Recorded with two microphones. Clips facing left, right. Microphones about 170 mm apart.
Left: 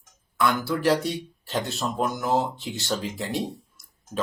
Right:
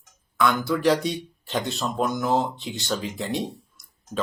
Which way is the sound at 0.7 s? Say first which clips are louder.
Right 1 dB; centre (ahead or behind).